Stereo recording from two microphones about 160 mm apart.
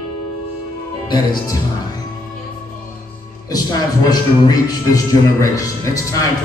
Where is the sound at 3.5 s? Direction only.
25° left (ahead or behind).